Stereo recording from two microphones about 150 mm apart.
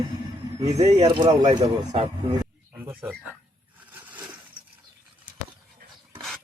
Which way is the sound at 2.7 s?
10° right (ahead or behind).